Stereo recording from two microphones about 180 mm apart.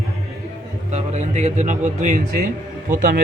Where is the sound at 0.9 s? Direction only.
40° right (ahead or behind).